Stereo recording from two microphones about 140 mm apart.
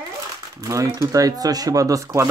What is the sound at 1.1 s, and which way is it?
Speech, 25° right (ahead or behind).